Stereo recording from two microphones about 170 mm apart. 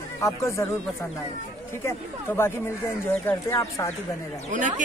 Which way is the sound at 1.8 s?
15° left (ahead or behind).